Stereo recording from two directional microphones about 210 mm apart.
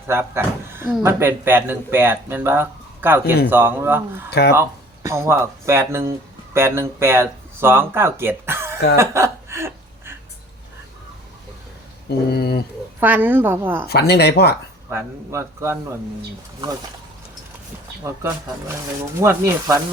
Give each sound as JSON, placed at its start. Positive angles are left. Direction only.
{"t": 0.1, "sound": "speech", "side_deg": -10}
{"t": 4.3, "sound": "speech", "side_deg": 50}
{"t": 5.0, "sound": "speech", "side_deg": -15}
{"t": 9.0, "sound": "chuckle", "side_deg": -15}
{"t": 12.0, "sound": "a sound", "side_deg": 50}
{"t": 13.0, "sound": "speech", "side_deg": -10}
{"t": 13.8, "sound": "speech", "side_deg": 50}
{"t": 14.8, "sound": "speech", "side_deg": -15}
{"t": 19.2, "sound": "speech", "side_deg": -15}